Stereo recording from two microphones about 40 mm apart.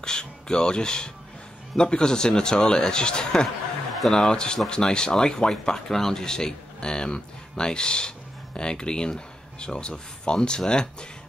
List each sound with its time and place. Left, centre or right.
0.0 s speech: centre